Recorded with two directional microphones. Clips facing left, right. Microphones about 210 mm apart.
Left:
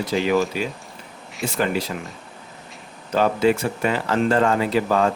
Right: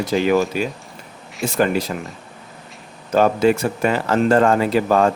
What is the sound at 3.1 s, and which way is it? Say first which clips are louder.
Speech: right 3 dB; 45° right (ahead or behind).